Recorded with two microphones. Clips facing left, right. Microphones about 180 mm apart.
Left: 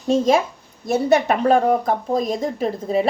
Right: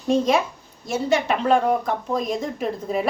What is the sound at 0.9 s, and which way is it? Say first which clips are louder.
Speech: left 4 dB; 55° left (ahead or behind).